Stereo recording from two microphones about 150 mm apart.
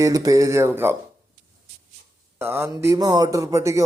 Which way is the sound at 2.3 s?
15° right (ahead or behind).